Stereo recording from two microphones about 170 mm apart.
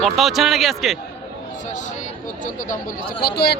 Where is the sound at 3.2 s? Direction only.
70° left (ahead or behind).